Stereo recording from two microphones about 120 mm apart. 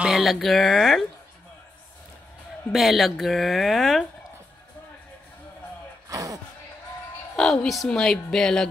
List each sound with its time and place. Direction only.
0.0 s speech: centre (ahead or behind)
2.7 s speech: centre (ahead or behind)
6.0 s a sound: 30° right (ahead or behind)
7.3 s speech: centre (ahead or behind)